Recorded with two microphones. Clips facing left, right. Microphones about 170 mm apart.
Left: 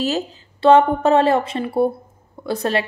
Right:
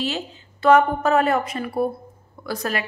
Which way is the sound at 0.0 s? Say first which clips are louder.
Left 5 dB; 40° left (ahead or behind).